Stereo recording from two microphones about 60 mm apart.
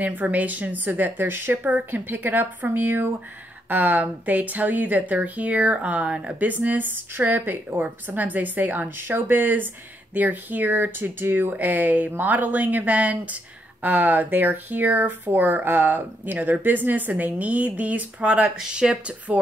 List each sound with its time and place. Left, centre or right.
0.0 s a woman's voice: right
6.5 s a woman's voice: right